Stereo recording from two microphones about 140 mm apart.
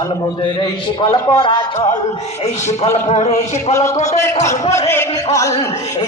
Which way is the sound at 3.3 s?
20° left (ahead or behind).